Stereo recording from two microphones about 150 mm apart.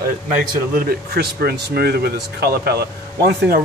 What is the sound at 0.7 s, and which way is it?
Speech, 90° right.